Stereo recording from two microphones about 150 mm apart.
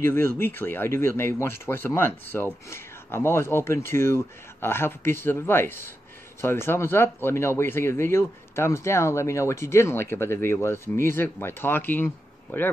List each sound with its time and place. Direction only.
0.0 s speech: 15° left (ahead or behind)